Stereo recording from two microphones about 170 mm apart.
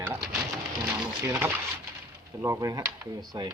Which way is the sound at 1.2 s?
15° right (ahead or behind).